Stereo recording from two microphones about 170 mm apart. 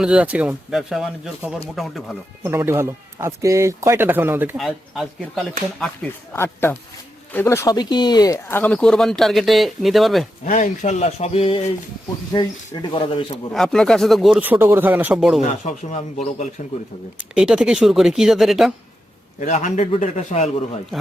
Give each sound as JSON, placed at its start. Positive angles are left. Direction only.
{"t": 0.0, "sound": "speech", "side_deg": -5}
{"t": 2.4, "sound": "speech", "side_deg": -15}
{"t": 4.5, "sound": "speech", "side_deg": 0}
{"t": 6.3, "sound": "speech", "side_deg": 15}
{"t": 10.4, "sound": "speech", "side_deg": 45}
{"t": 13.5, "sound": "speech", "side_deg": 0}
{"t": 15.4, "sound": "a man's voice", "side_deg": 45}
{"t": 17.2, "sound": "speech", "side_deg": -5}
{"t": 19.4, "sound": "a man's voice", "side_deg": 45}